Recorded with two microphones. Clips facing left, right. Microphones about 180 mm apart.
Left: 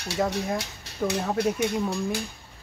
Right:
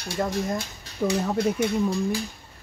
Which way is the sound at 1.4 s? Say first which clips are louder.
Right 1 dB; 65° left (ahead or behind).